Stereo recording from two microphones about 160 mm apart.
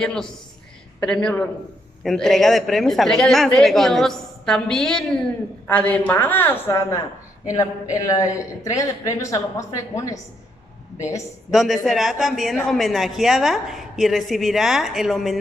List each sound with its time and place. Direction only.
0.0 s a woman's voice: 5° left (ahead or behind)
11.5 s speech: centre (ahead or behind)